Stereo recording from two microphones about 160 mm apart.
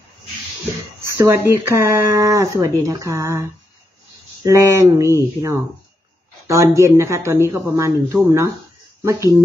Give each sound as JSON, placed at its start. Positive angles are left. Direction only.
{"t": 1.1, "sound": "speech", "side_deg": -15}
{"t": 4.5, "sound": "speech", "side_deg": -20}